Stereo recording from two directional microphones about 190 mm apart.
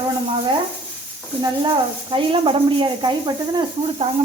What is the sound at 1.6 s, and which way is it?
Speech, 25° right (ahead or behind).